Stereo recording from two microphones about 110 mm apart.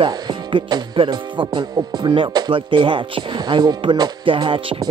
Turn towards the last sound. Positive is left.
turn(degrees=-50)  # may be behind; listen again after turning